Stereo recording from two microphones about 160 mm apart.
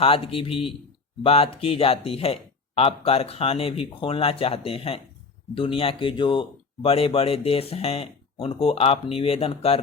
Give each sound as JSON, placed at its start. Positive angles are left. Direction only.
{"t": 0.0, "sound": "speech", "side_deg": 35}